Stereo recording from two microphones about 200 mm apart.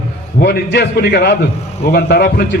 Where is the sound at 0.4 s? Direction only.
55° left (ahead or behind).